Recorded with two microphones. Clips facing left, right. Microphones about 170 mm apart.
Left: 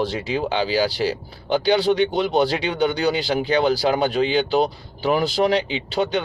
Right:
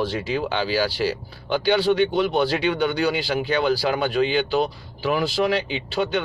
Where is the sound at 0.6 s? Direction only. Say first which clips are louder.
Left 3 dB; 20° left (ahead or behind).